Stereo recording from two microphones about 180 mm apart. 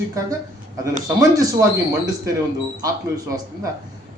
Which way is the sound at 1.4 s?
15° right (ahead or behind).